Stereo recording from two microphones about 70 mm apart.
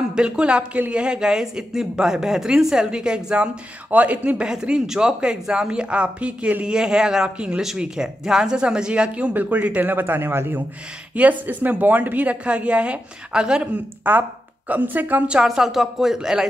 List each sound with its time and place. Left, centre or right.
0.1 s a woman's voice: centre
14.0 s a woman's voice: right
15.4 s speech: centre